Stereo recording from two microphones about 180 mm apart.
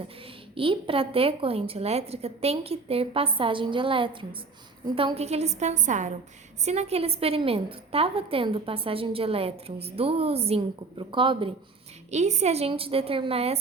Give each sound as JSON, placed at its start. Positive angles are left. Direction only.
{"t": 0.5, "sound": "a woman's voice", "side_deg": -30}
{"t": 12.1, "sound": "a woman's voice", "side_deg": -40}